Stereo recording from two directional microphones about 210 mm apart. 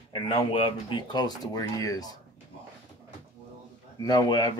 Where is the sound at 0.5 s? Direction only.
25° left (ahead or behind).